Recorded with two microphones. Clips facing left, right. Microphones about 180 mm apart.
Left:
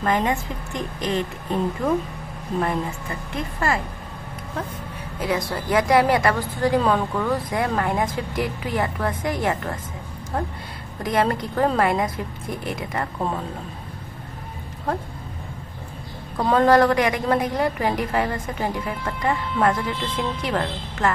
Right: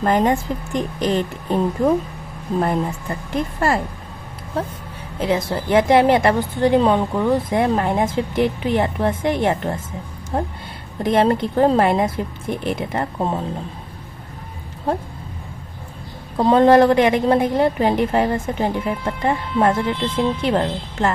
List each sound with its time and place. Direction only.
0.0 s a woman's voice: 35° right (ahead or behind)
3.5 s a woman's voice: 30° right (ahead or behind)
5.2 s a woman's voice: 25° right (ahead or behind)
16.3 s a woman's voice: 25° right (ahead or behind)